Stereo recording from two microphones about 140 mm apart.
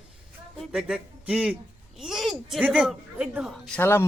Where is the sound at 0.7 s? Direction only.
5° right (ahead or behind).